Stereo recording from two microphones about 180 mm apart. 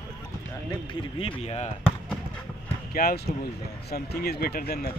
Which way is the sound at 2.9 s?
55° left (ahead or behind).